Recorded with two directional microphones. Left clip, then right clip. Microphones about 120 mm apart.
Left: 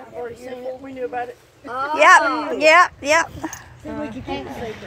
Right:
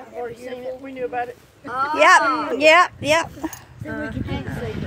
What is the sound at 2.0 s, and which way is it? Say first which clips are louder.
Speech: left 2 dB; 60° right (ahead or behind).